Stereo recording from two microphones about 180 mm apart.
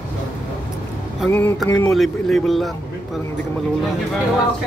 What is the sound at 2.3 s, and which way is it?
Speech, centre (ahead or behind).